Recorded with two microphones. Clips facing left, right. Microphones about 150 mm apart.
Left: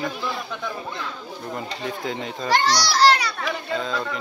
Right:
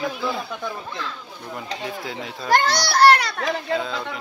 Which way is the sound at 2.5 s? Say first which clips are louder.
Right 1 dB; 55° right (ahead or behind).